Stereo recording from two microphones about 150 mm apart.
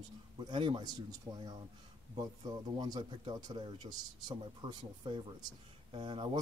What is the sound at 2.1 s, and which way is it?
Speech, 25° right (ahead or behind).